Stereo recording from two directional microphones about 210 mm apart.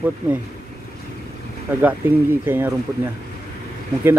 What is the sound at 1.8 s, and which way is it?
Speech, 10° right (ahead or behind).